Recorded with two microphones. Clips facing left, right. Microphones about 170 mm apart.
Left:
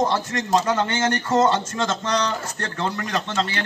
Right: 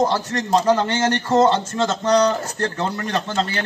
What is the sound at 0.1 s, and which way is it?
Speech, 35° right (ahead or behind).